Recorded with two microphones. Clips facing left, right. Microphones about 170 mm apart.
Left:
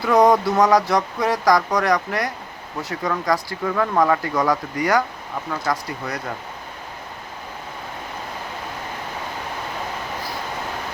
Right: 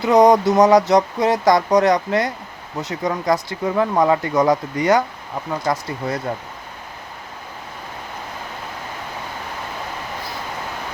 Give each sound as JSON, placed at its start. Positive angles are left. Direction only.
{"t": 0.0, "sound": "speech", "side_deg": -20}